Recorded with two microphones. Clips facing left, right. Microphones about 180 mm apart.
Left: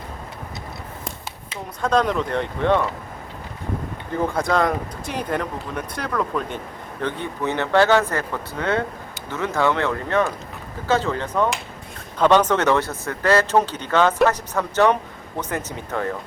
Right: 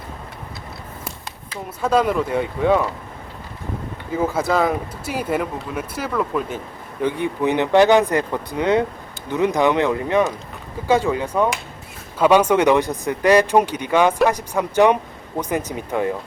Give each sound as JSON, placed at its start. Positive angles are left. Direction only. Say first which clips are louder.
{"t": 1.8, "sound": "speech", "louder": "right 2 dB", "side_deg": -5}
{"t": 4.1, "sound": "speech", "louder": "right 2 dB", "side_deg": -5}